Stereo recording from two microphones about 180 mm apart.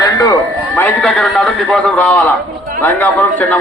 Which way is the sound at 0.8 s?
Centre (ahead or behind).